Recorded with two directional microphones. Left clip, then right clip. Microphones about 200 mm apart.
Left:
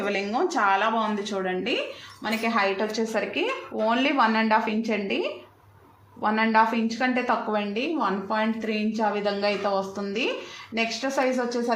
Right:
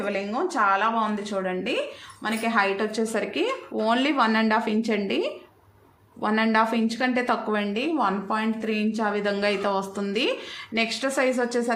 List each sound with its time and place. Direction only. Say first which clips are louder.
0.0 s speech: left 1 dB; 5° right (ahead or behind)
2.2 s a woman's voice: right 1 dB; 20° right (ahead or behind)